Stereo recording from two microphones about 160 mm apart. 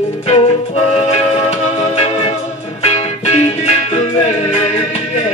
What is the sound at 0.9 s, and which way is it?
Music, 40° left (ahead or behind).